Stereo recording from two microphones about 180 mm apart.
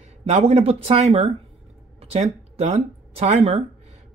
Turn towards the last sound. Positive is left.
turn(degrees=-30)  # may be behind; listen again after turning